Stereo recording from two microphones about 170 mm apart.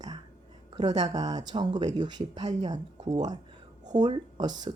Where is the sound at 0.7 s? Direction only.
25° right (ahead or behind).